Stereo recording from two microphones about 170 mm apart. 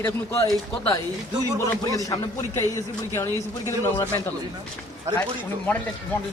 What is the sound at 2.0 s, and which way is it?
Speech, 20° left (ahead or behind).